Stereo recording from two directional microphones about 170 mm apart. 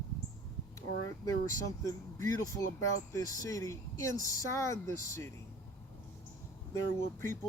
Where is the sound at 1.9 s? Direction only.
20° left (ahead or behind).